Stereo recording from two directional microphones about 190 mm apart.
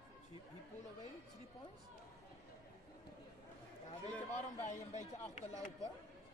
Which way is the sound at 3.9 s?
35° left (ahead or behind).